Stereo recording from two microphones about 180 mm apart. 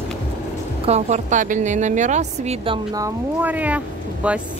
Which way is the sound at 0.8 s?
35° right (ahead or behind).